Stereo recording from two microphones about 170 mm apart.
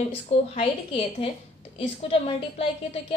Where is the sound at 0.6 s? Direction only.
35° left (ahead or behind).